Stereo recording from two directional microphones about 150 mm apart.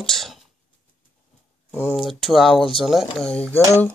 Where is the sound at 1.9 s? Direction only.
Centre (ahead or behind).